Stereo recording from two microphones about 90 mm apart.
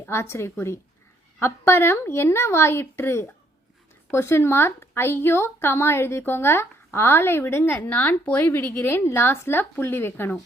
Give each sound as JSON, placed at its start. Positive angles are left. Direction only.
{"t": 0.0, "sound": "a woman's voice", "side_deg": 30}